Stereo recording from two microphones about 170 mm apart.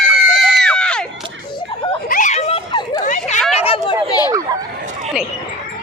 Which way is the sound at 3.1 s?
45° left (ahead or behind).